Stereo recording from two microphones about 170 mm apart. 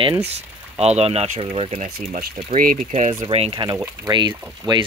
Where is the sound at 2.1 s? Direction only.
55° right (ahead or behind).